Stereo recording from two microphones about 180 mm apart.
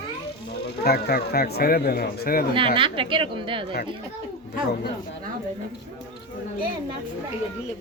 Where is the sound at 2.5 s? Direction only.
30° right (ahead or behind).